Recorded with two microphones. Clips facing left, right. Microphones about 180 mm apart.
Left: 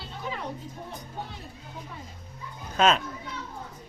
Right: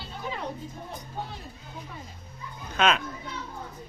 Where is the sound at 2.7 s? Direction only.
35° left (ahead or behind).